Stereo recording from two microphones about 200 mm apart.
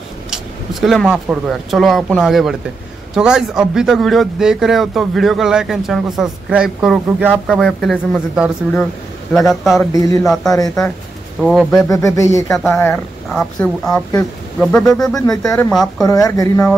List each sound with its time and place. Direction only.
0.3 s speech: centre (ahead or behind)
9.9 s speech: 15° left (ahead or behind)
10.2 s speech: centre (ahead or behind)
11.9 s speech: 15° left (ahead or behind)
12.4 s speech: centre (ahead or behind)
16.1 s speech: 15° left (ahead or behind)